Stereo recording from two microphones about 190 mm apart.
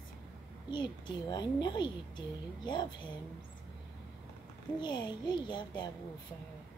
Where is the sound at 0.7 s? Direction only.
25° left (ahead or behind).